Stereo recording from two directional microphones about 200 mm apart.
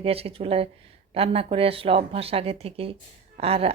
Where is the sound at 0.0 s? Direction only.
30° right (ahead or behind).